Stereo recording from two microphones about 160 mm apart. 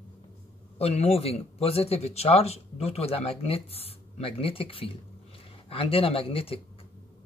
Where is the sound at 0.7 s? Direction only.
40° left (ahead or behind).